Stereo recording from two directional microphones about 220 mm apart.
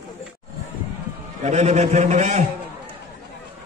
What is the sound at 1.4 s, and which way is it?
A man's voice, 30° right (ahead or behind).